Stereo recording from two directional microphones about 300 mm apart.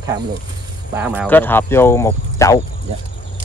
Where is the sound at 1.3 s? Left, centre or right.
Centre.